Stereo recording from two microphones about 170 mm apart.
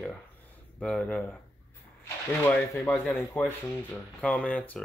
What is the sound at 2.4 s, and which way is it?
Speech, 15° left (ahead or behind).